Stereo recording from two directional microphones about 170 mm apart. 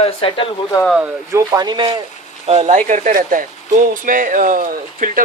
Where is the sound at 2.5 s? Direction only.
40° right (ahead or behind).